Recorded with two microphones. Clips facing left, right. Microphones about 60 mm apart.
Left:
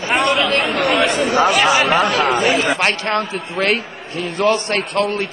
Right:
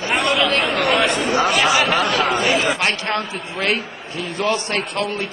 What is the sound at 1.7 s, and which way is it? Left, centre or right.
Speech, left.